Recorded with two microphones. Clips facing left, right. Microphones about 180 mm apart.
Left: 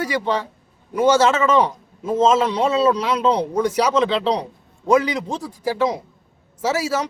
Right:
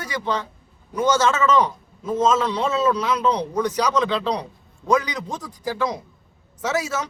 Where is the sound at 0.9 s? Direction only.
25° left (ahead or behind).